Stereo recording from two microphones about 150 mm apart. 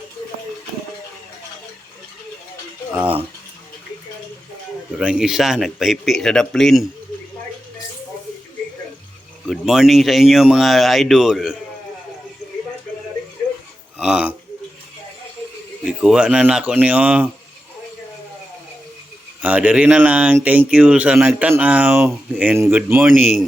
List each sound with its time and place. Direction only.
3.0 s speech: 35° right (ahead or behind)
4.9 s speech: 5° right (ahead or behind)
9.5 s speech: centre (ahead or behind)
14.0 s burping: 5° right (ahead or behind)
15.9 s speech: 5° right (ahead or behind)
19.4 s speech: 10° right (ahead or behind)